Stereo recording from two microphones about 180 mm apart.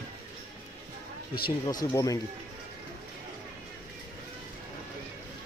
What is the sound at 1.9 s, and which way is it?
Speech, 20° left (ahead or behind).